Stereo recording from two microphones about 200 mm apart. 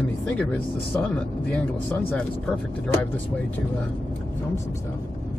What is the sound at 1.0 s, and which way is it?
Speech, 5° left (ahead or behind).